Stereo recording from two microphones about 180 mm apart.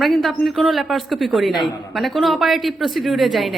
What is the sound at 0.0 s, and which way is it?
A woman's voice, centre (ahead or behind).